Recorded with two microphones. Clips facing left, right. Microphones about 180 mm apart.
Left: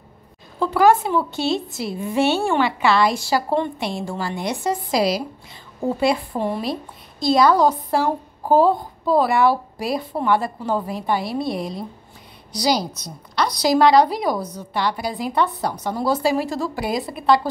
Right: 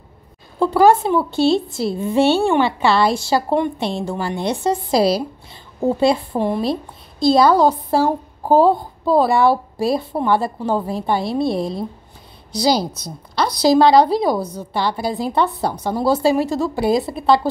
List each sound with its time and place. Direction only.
0.6 s a woman's voice: 30° right (ahead or behind)
7.2 s a woman's voice: 30° right (ahead or behind)